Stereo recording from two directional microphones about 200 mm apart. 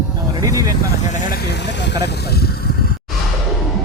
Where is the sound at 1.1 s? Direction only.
40° left (ahead or behind).